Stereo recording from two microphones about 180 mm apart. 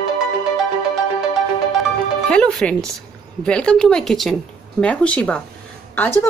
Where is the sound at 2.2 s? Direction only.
5° left (ahead or behind).